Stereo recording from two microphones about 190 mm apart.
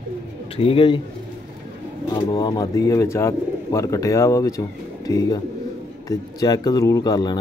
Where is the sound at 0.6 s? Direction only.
30° left (ahead or behind).